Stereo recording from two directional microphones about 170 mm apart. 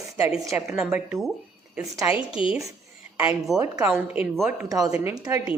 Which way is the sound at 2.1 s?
30° left (ahead or behind).